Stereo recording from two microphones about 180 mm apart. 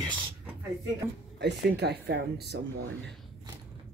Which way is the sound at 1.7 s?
65° right (ahead or behind).